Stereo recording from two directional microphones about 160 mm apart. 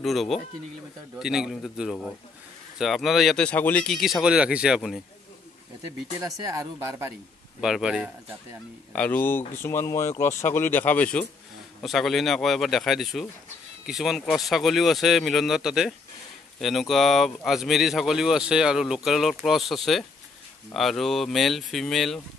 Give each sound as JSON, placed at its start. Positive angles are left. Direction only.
{"t": 0.0, "sound": "speech", "side_deg": 0}
{"t": 6.5, "sound": "speech", "side_deg": -20}
{"t": 7.6, "sound": "speech", "side_deg": -5}
{"t": 8.9, "sound": "speech", "side_deg": 10}